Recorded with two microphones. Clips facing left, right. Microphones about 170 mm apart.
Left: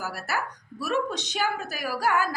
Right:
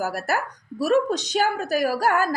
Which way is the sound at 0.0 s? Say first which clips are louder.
Right 6 dB; 45° right (ahead or behind).